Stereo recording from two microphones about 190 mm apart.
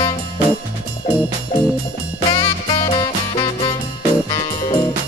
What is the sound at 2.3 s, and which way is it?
Music, 25° left (ahead or behind).